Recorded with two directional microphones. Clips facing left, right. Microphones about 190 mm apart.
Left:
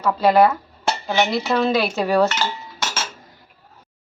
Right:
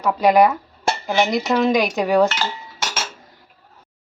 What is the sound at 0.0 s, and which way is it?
Cutlery, 15° right (ahead or behind).